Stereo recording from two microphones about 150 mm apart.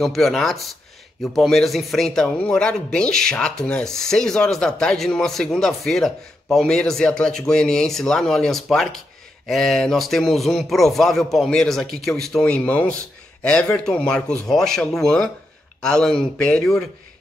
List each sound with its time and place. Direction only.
0.0 s speech: centre (ahead or behind)